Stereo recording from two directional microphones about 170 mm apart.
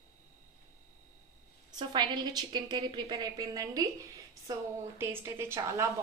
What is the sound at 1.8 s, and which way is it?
A woman's voice, 25° right (ahead or behind).